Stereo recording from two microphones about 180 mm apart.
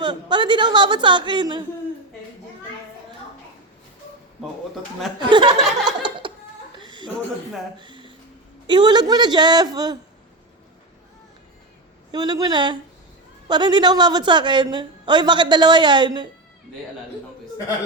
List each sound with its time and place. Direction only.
0.0 s a woman's voice: 25° right (ahead or behind)
5.3 s chuckle: 25° right (ahead or behind)
7.8 s a sound: 25° right (ahead or behind)
8.6 s a woman's voice: 25° right (ahead or behind)
12.1 s a woman's voice: 25° right (ahead or behind)